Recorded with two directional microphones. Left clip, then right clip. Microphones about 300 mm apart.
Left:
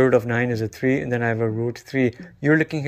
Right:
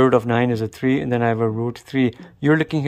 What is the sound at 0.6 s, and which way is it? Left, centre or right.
Speech, centre.